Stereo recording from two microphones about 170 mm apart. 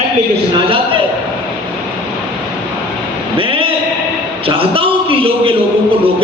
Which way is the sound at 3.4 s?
30° right (ahead or behind).